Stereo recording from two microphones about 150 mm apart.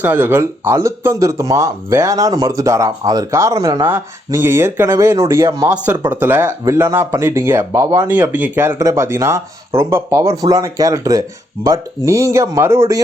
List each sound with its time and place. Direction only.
0.0 s speech: 15° right (ahead or behind)
3.8 s speech: 15° right (ahead or behind)